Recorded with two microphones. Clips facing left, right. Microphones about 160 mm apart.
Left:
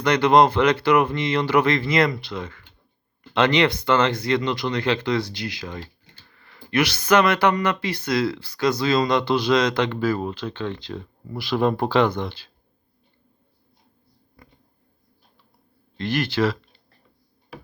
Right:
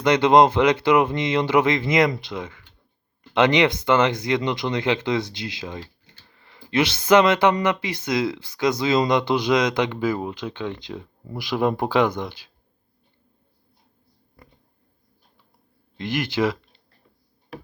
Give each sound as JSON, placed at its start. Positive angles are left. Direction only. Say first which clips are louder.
{"t": 0.0, "sound": "speech", "louder": "right 1 dB", "side_deg": -20}
{"t": 16.0, "sound": "speech", "louder": "left 1 dB", "side_deg": -20}